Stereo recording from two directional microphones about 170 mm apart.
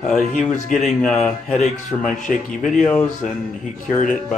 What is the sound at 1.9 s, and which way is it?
Speech, 15° left (ahead or behind).